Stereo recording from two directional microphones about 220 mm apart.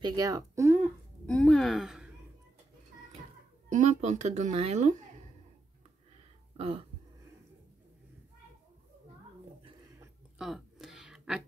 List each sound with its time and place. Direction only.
0.0 s speech: 15° right (ahead or behind)
1.2 s a woman's voice: 5° left (ahead or behind)
3.6 s a woman's voice: 30° right (ahead or behind)
6.5 s throat clearing: 25° right (ahead or behind)
10.4 s a sound: centre (ahead or behind)